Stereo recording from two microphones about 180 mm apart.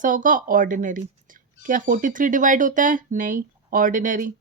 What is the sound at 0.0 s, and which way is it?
Speech, 45° right (ahead or behind).